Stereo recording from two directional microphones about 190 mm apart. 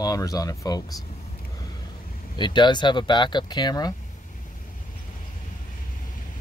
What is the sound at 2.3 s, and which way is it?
Speech, 25° left (ahead or behind).